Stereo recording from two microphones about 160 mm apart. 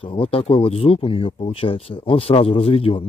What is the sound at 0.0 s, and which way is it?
Speech, 35° left (ahead or behind).